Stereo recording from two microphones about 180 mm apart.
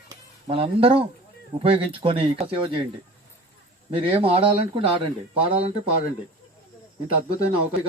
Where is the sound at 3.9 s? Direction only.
30° right (ahead or behind).